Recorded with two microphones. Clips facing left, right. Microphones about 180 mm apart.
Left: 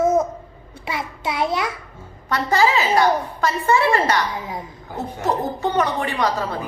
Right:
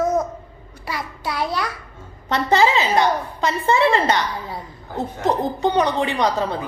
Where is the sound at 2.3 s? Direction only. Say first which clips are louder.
Right 1 dB; 20° right (ahead or behind).